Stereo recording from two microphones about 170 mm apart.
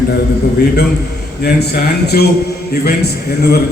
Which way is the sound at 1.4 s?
65° left (ahead or behind).